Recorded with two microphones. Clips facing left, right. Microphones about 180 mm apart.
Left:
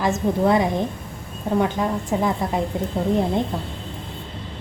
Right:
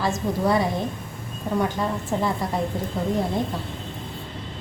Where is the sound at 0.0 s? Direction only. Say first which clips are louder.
Left 4 dB; 20° left (ahead or behind).